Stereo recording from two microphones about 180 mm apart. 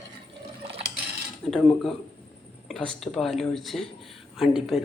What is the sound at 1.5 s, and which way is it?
Speech, centre (ahead or behind).